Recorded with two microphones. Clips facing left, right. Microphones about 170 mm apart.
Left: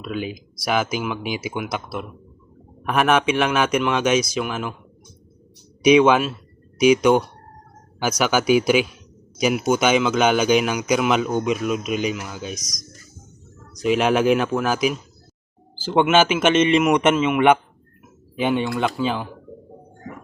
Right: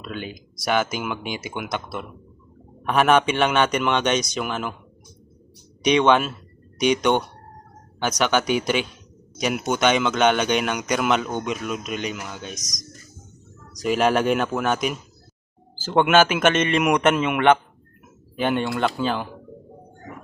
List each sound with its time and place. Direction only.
0.0 s a man's voice: 5° left (ahead or behind)
5.8 s a man's voice: 5° left (ahead or behind)
13.8 s a man's voice: centre (ahead or behind)